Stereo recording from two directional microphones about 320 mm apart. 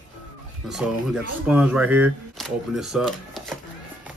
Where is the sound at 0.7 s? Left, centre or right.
Centre.